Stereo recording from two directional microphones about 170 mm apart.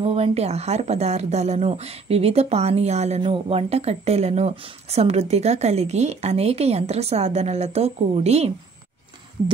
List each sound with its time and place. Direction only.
0.0 s speech: 35° right (ahead or behind)